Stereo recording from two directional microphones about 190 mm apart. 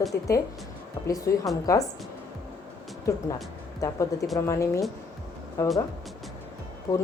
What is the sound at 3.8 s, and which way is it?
Speech, 15° left (ahead or behind).